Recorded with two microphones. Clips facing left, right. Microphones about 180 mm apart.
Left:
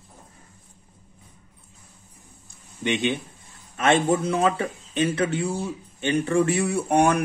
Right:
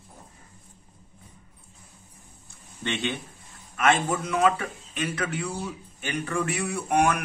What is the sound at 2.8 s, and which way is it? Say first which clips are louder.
Speech: left 5 dB; 15° left (ahead or behind).